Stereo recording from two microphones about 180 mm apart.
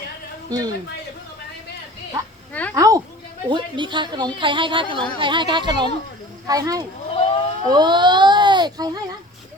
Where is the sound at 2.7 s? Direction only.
20° right (ahead or behind).